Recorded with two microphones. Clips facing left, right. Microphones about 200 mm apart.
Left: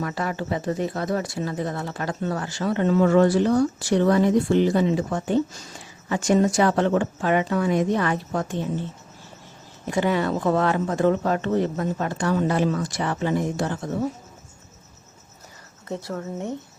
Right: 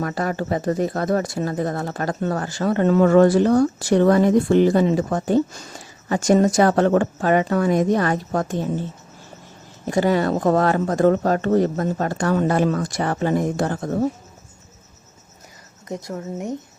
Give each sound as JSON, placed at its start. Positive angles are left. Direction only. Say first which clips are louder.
{"t": 0.0, "sound": "speech", "louder": "right 4 dB", "side_deg": -45}
{"t": 9.8, "sound": "speech", "louder": "right 4 dB", "side_deg": -40}
{"t": 15.9, "sound": "speech", "louder": "right 1 dB", "side_deg": -15}